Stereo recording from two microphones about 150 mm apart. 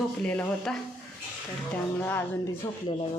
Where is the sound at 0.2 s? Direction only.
5° left (ahead or behind).